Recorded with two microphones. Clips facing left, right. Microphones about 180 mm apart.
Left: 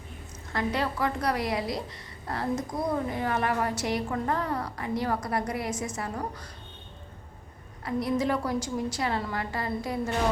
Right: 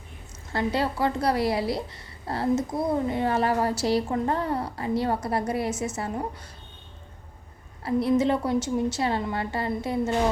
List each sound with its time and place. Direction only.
0.5 s a woman's voice: 30° right (ahead or behind)
7.9 s a woman's voice: 25° right (ahead or behind)